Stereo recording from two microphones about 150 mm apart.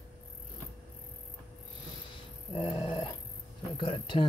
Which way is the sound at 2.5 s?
40° left (ahead or behind).